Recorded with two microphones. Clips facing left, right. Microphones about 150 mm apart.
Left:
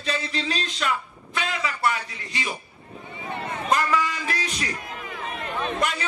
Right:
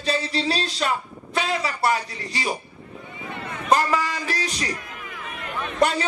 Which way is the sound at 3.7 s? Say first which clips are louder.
Right 3 dB; 35° right (ahead or behind).